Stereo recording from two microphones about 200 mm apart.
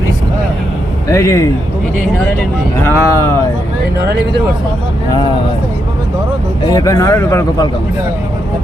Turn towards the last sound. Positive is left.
turn(degrees=15)  # may be behind; listen again after turning